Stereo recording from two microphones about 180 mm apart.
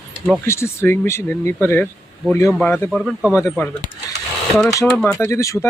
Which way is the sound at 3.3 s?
15° left (ahead or behind).